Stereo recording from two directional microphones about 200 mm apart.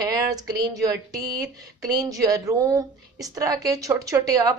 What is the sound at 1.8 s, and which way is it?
Speech, 15° right (ahead or behind).